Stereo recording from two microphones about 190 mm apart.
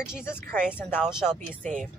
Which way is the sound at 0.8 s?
10° left (ahead or behind).